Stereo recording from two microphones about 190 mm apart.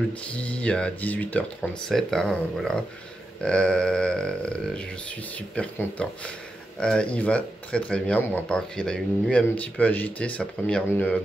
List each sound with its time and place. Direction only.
0.3 s speech: 5° left (ahead or behind)